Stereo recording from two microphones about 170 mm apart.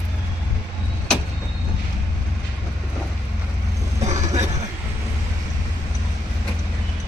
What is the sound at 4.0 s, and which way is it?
Vehicle, 40° right (ahead or behind).